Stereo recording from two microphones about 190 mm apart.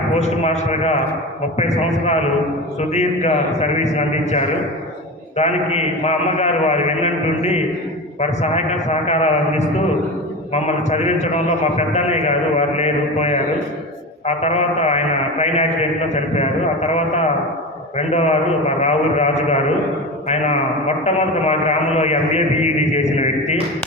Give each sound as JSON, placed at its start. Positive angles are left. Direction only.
{"t": 0.1, "sound": "a man's voice", "side_deg": 35}